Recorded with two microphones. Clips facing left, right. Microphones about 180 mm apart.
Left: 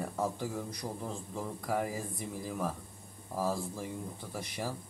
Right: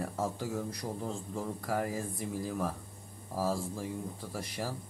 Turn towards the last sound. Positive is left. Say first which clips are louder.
# even
turn(degrees=0)  # may be behind; listen again after turning